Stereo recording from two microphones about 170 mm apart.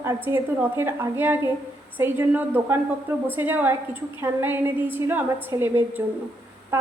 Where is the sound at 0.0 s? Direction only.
15° right (ahead or behind).